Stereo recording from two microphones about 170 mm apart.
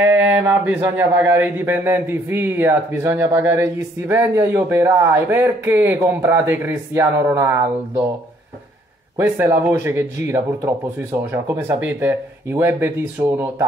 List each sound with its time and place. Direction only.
0.7 s speech: 10° right (ahead or behind)
9.2 s speech: 15° right (ahead or behind)